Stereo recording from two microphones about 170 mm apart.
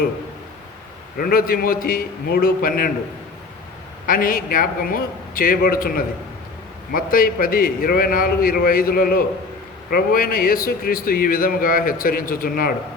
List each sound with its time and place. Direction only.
1.2 s speech: 60° left (ahead or behind)
4.0 s speech: 55° left (ahead or behind)